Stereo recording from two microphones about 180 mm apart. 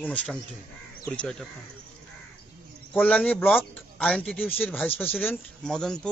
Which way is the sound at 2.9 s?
5° left (ahead or behind).